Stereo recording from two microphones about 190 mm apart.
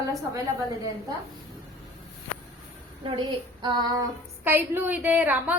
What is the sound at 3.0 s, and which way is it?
Child singing, 25° right (ahead or behind).